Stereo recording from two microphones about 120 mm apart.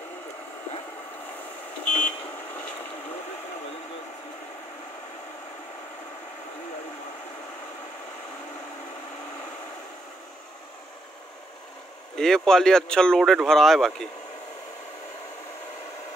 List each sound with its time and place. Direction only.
1.9 s vehicle: 15° left (ahead or behind)
12.2 s speech: 5° left (ahead or behind)